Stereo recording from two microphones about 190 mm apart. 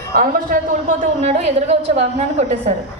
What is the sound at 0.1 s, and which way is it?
A man's voice, 45° right (ahead or behind).